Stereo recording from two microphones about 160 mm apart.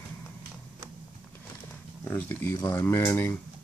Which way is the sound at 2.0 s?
15° left (ahead or behind).